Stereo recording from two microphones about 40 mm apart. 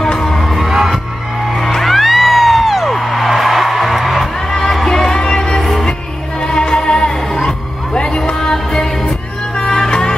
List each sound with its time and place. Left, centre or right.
0.0 s music: centre
0.5 s music: centre
4.5 s music: centre
6.4 s music: centre